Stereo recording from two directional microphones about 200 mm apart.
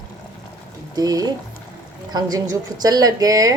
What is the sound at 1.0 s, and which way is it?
A woman's voice, 20° right (ahead or behind).